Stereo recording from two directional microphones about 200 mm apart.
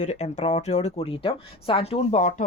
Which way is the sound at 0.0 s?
35° left (ahead or behind).